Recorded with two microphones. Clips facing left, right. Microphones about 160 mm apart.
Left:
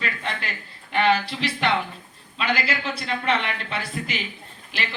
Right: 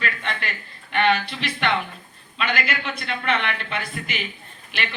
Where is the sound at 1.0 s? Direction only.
35° left (ahead or behind).